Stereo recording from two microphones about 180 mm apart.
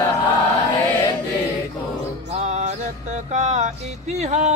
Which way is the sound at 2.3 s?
40° right (ahead or behind).